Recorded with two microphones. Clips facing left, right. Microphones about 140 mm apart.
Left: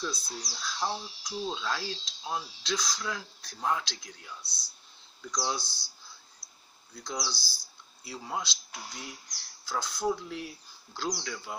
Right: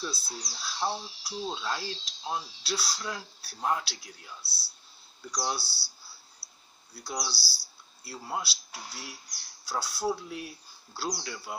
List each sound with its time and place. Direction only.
0.2 s speech: 10° right (ahead or behind)
6.4 s a sound: 30° right (ahead or behind)
6.9 s speech: 5° right (ahead or behind)